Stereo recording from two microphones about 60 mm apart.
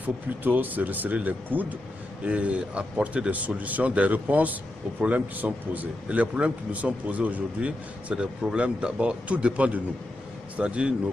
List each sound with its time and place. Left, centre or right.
0.0 s a man's voice: right